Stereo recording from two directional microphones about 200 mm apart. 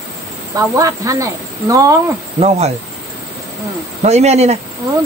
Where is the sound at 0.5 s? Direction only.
15° right (ahead or behind).